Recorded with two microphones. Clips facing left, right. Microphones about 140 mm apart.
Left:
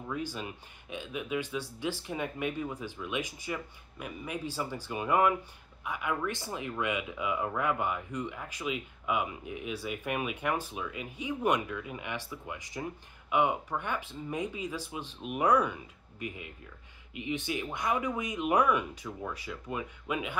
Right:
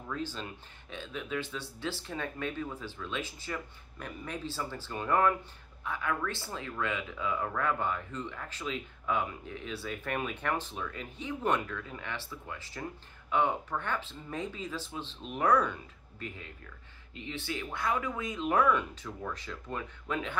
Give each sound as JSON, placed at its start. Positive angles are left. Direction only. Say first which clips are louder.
{"t": 0.1, "sound": "speech", "louder": "left 1 dB", "side_deg": 15}